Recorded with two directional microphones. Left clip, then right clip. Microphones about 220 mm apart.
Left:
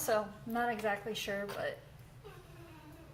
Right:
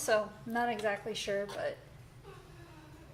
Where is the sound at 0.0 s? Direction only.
30° right (ahead or behind).